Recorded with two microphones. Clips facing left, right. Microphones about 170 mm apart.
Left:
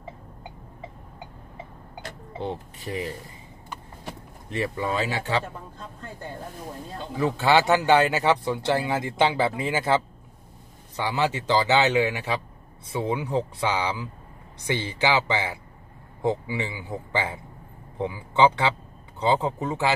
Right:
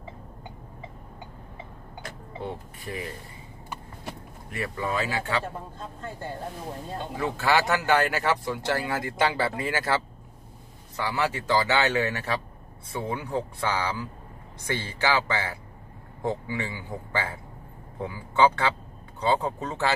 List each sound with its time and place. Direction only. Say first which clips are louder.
2.3 s speech: left 4 dB; 25° left (ahead or behind)
4.5 s speech: left 3 dB; 25° left (ahead or behind)
7.2 s a man's voice: left 4 dB; 20° left (ahead or behind)